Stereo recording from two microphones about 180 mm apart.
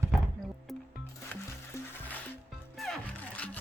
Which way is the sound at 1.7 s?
15° left (ahead or behind).